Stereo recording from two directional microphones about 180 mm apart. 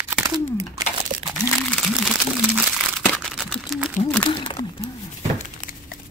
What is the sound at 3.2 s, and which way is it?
Camera, centre (ahead or behind).